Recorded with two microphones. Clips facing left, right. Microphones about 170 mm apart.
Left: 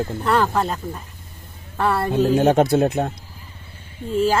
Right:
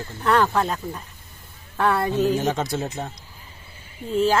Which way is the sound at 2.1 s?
55° left (ahead or behind).